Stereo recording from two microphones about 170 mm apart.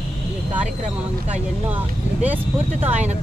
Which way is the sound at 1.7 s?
10° right (ahead or behind).